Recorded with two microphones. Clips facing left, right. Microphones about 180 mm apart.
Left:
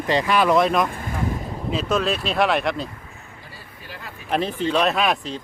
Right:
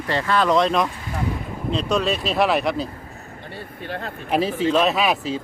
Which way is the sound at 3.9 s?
60° right (ahead or behind).